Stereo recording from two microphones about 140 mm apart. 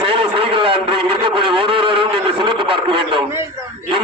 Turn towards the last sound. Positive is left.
turn(degrees=-40)  # may be behind; listen again after turning